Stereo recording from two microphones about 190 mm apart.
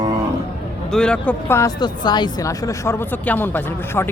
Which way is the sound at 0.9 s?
5° left (ahead or behind).